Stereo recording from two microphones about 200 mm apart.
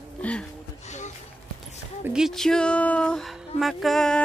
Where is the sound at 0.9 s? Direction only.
35° left (ahead or behind).